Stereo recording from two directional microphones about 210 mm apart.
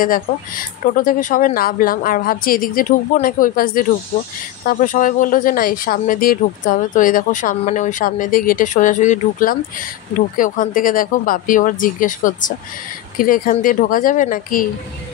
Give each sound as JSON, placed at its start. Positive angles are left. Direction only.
{"t": 0.0, "sound": "speech", "side_deg": 40}